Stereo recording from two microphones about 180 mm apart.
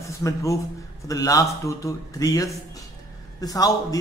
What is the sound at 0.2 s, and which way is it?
A man's voice, 15° left (ahead or behind).